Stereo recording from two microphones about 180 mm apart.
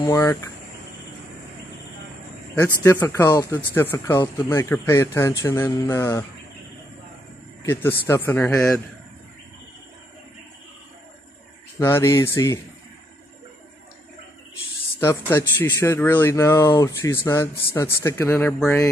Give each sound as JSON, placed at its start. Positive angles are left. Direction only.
{"t": 0.0, "sound": "speech", "side_deg": 15}
{"t": 2.6, "sound": "speech", "side_deg": 15}
{"t": 7.6, "sound": "speech", "side_deg": 10}
{"t": 11.8, "sound": "speech", "side_deg": 15}
{"t": 15.0, "sound": "speech", "side_deg": 15}